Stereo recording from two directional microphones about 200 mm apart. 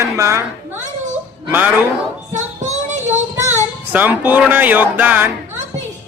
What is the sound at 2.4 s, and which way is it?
Child singing, 35° right (ahead or behind).